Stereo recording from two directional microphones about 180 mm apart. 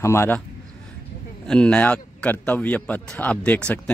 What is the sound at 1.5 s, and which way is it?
A man's voice, 5° left (ahead or behind).